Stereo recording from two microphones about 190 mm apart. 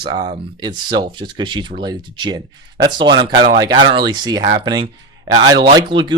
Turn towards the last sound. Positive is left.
turn(degrees=-25)  # may be behind; listen again after turning